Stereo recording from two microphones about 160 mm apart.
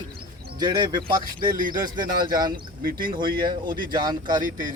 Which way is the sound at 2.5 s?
65° right (ahead or behind).